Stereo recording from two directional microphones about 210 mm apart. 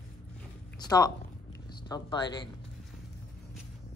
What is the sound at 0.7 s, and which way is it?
Speech, 20° left (ahead or behind).